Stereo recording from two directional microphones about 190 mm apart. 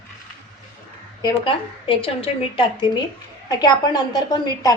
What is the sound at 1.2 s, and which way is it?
A woman's voice, 25° left (ahead or behind).